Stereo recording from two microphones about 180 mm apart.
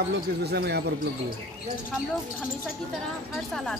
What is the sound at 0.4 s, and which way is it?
Speech, 65° right (ahead or behind).